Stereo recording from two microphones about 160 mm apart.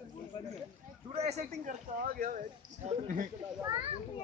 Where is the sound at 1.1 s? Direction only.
45° right (ahead or behind); by 2.4 s 65° right (ahead or behind).